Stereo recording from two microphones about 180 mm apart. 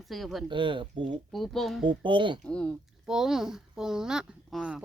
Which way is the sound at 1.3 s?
Centre (ahead or behind).